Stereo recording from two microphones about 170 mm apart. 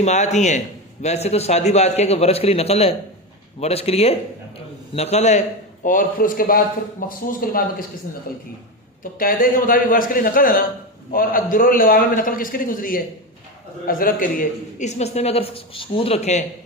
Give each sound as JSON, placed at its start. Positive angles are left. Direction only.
{"t": 0.0, "sound": "a man's voice", "side_deg": 45}
{"t": 5.8, "sound": "a man's voice", "side_deg": 50}